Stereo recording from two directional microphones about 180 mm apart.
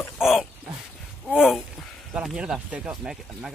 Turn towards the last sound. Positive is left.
turn(degrees=-5)  # may be behind; listen again after turning